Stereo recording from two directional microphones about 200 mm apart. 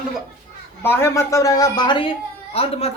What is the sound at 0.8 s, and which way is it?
A woman's voice, 10° left (ahead or behind).